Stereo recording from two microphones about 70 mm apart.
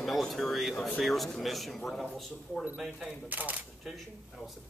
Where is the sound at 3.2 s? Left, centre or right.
Right.